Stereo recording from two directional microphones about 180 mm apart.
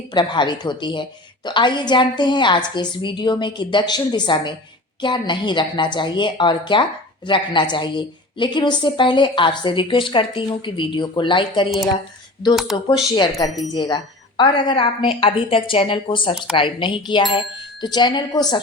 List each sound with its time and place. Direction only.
0.1 s a woman's voice: 25° left (ahead or behind)